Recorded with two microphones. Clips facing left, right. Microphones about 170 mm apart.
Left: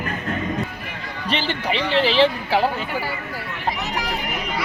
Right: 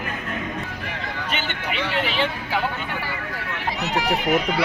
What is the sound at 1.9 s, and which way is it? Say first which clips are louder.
Speech: left 9 dB; 30° left (ahead or behind).